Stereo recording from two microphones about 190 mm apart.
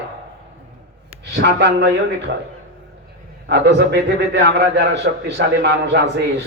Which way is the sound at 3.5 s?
65° right (ahead or behind).